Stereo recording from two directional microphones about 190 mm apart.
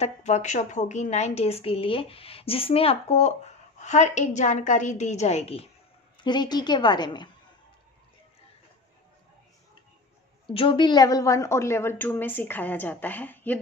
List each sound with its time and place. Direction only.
0.0 s a woman's voice: 40° left (ahead or behind)
10.5 s a woman's voice: 25° left (ahead or behind); by 13.6 s 10° left (ahead or behind)